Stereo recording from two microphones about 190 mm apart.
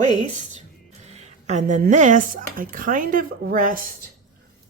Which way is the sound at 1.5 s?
40° right (ahead or behind).